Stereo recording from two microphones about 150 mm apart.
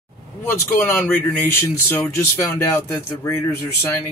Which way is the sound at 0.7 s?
15° left (ahead or behind).